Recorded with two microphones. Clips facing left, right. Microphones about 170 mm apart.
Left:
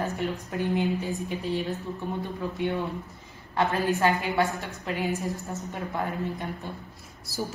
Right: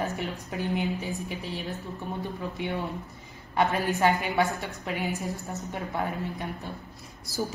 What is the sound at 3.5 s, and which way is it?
Speech, 15° right (ahead or behind).